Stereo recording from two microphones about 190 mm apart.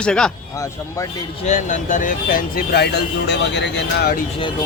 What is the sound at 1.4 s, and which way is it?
Speech, 40° left (ahead or behind).